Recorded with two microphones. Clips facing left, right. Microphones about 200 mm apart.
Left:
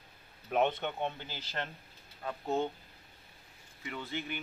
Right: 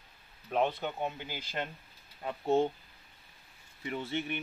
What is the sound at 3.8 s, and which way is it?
Speech, 25° right (ahead or behind).